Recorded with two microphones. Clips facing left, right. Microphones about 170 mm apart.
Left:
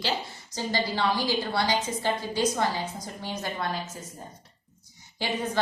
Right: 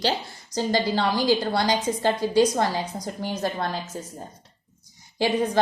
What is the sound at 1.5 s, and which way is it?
A woman's voice, 40° right (ahead or behind).